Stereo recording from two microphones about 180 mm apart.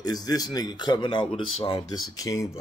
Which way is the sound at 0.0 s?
20° left (ahead or behind).